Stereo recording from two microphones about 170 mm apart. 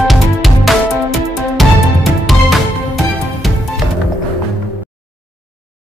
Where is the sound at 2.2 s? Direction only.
Centre (ahead or behind).